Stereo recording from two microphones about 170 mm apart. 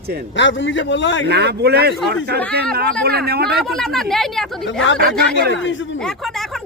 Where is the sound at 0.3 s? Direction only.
90° left.